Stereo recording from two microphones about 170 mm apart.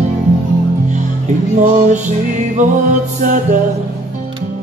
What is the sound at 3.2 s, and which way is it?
Music, 50° right (ahead or behind).